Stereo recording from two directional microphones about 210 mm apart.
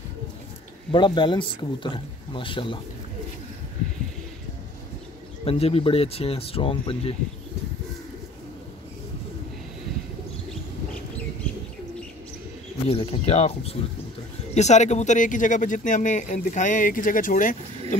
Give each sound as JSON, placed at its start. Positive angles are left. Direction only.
{"t": 0.9, "sound": "speech", "side_deg": 20}
{"t": 5.4, "sound": "speech", "side_deg": 25}
{"t": 12.8, "sound": "speech", "side_deg": 30}